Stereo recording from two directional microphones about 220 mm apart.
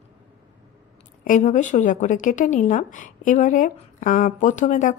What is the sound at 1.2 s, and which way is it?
A woman's voice, 35° left (ahead or behind).